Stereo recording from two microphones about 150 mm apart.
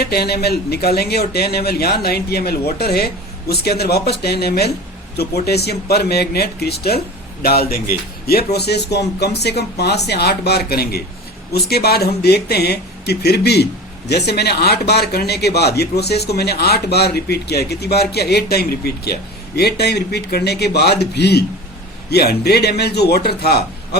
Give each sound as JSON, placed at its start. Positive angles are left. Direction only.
{"t": 0.0, "sound": "a man's voice", "side_deg": 90}